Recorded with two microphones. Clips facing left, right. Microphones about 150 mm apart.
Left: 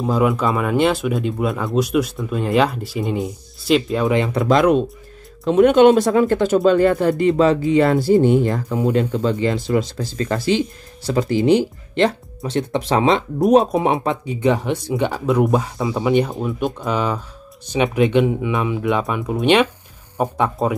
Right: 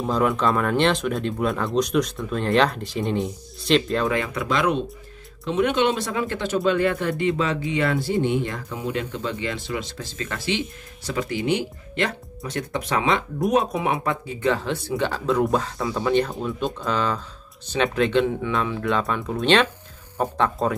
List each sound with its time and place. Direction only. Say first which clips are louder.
0.0 s speech: left 3 dB; 5° left (ahead or behind)
4.0 s speech: left 5 dB; 20° left (ahead or behind)
4.3 s speech: left 8 dB; 35° left (ahead or behind); by 20.5 s 10° left (ahead or behind)